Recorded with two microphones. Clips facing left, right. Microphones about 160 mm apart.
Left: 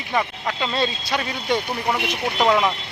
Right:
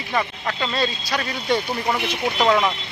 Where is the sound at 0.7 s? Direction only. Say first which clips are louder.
Left 1 dB; 25° left (ahead or behind).